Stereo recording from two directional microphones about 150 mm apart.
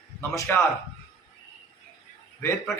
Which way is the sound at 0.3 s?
15° left (ahead or behind).